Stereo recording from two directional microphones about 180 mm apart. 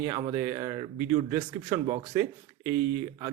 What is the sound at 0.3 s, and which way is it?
Speech, 20° right (ahead or behind).